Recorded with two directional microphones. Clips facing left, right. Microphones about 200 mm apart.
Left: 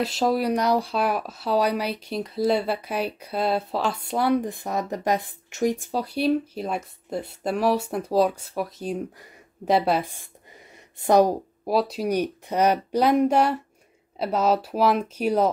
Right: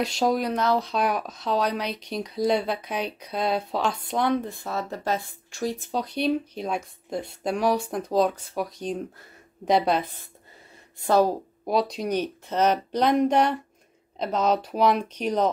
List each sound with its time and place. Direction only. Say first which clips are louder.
0.0 s speech: left 1 dB; 5° left (ahead or behind)
11.6 s speech: left 1 dB; 5° left (ahead or behind)